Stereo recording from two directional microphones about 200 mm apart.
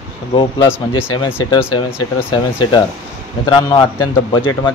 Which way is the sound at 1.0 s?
10° left (ahead or behind).